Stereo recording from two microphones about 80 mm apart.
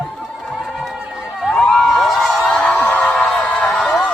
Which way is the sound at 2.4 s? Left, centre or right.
Centre.